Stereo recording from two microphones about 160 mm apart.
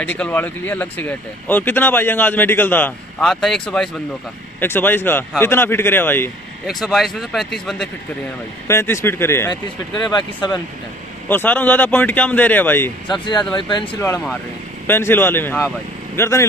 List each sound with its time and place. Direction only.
0.0 s speech: 10° left (ahead or behind)
6.6 s speech: centre (ahead or behind)
8.6 s speech: 15° left (ahead or behind)
11.2 s speech: 10° left (ahead or behind)
13.1 s speech: 30° left (ahead or behind)
14.9 s speech: 15° left (ahead or behind)